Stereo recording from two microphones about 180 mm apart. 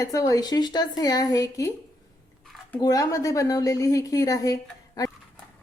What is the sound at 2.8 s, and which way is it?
A woman's voice, 20° left (ahead or behind).